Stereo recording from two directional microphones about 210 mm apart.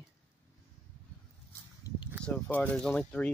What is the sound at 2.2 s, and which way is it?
Speech, 5° left (ahead or behind).